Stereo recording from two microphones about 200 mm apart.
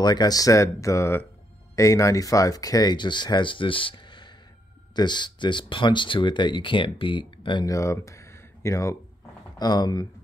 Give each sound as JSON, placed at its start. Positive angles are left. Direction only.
{"t": 0.0, "sound": "speech", "side_deg": 20}